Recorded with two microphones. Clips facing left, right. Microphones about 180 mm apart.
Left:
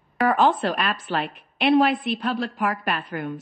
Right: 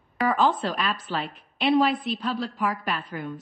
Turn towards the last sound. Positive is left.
turn(degrees=65)  # may be behind; listen again after turning